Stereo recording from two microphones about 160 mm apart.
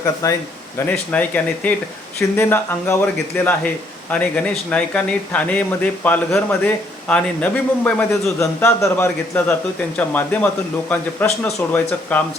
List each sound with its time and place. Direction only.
0.0 s speech: 20° left (ahead or behind)
0.9 s speech: 10° left (ahead or behind)